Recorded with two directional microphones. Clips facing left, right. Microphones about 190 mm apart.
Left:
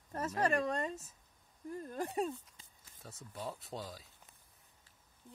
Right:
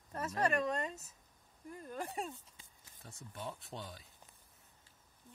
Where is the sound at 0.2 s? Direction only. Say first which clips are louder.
Left 1 dB; 35° left (ahead or behind).